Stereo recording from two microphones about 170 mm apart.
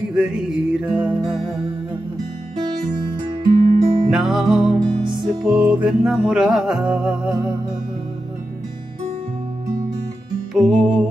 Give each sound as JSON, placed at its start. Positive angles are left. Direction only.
{"t": 0.1, "sound": "music", "side_deg": -5}
{"t": 3.4, "sound": "music", "side_deg": -50}
{"t": 4.1, "sound": "music", "side_deg": 0}
{"t": 10.5, "sound": "music", "side_deg": 0}